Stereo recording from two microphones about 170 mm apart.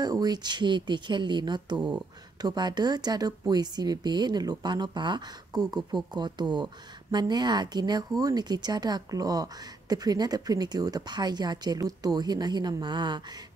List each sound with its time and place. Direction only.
0.0 s speech: 20° right (ahead or behind)
1.8 s speech: 5° right (ahead or behind)
2.4 s speech: 25° right (ahead or behind)